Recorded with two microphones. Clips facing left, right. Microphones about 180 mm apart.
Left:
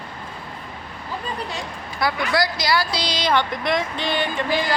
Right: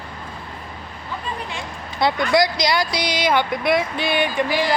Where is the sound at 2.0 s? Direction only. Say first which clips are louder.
Right 4 dB; 25° right (ahead or behind).